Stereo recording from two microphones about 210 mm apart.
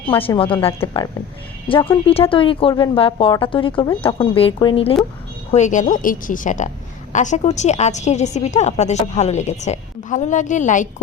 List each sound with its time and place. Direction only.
0.1 s a woman's voice: 25° left (ahead or behind)